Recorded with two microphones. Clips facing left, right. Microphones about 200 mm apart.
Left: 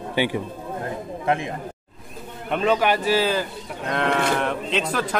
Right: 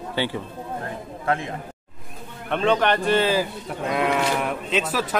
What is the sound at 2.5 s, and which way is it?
A man's voice, 5° left (ahead or behind).